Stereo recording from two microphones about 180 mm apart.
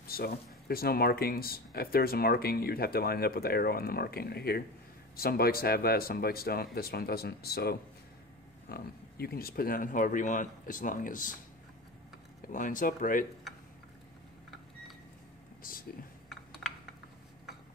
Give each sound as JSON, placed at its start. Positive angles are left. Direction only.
{"t": 0.0, "sound": "speech", "side_deg": 55}
{"t": 12.5, "sound": "speech", "side_deg": 45}
{"t": 16.3, "sound": "a sound", "side_deg": 0}